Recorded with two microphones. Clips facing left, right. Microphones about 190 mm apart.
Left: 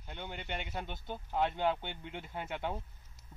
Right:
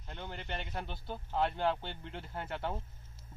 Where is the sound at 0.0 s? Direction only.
5° left (ahead or behind).